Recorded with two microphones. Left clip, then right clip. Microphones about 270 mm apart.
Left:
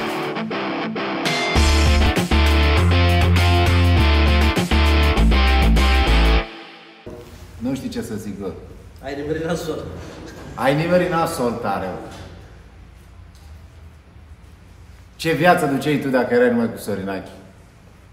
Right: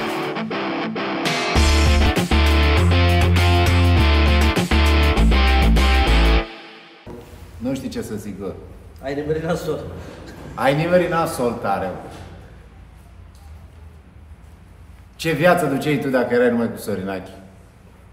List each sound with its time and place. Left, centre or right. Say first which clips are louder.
0.0 s music: even; centre
7.6 s speech: even; centre
9.0 s a man's voice: right 2 dB; right
10.5 s a man's voice: right 1 dB; centre
15.1 s a man's voice: left 1 dB; centre